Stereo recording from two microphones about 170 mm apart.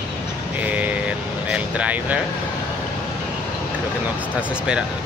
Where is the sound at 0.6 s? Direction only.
10° right (ahead or behind).